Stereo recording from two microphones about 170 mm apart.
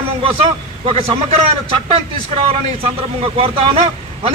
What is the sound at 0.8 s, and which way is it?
Speech, 35° right (ahead or behind).